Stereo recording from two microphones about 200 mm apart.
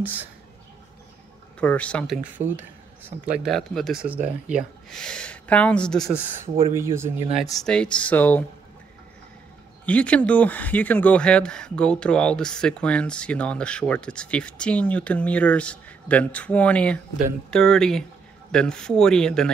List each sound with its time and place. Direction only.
0.0 s speech: 10° right (ahead or behind)
1.6 s speech: 5° left (ahead or behind)
2.4 s speech: 35° right (ahead or behind)
3.0 s speech: 5° right (ahead or behind)
6.0 s speech: 30° right (ahead or behind)
6.7 s speech: 15° right (ahead or behind)
7.5 s speech: 5° left (ahead or behind)
9.8 s speech: 5° left (ahead or behind)